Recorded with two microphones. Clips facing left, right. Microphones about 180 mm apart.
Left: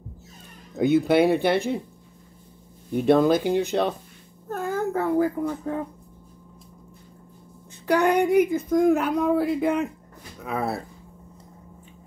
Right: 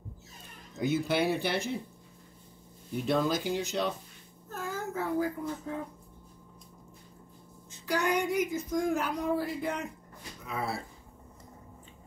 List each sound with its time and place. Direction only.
0.7 s speech: 60° left (ahead or behind)
2.9 s speech: 60° left (ahead or behind)
7.8 s speech: 60° left (ahead or behind)